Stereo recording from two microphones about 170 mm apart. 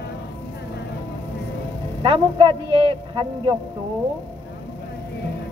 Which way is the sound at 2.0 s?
30° right (ahead or behind).